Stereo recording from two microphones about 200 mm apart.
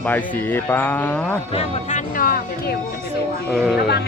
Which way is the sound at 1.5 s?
35° left (ahead or behind).